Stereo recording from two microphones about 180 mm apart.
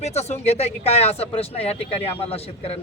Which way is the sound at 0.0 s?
35° left (ahead or behind).